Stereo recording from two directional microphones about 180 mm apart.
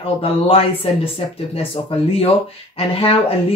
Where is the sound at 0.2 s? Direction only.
30° left (ahead or behind).